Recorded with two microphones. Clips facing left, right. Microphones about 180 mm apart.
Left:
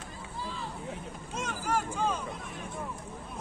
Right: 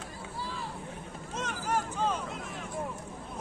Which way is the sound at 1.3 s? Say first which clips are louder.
Even; 10° left (ahead or behind).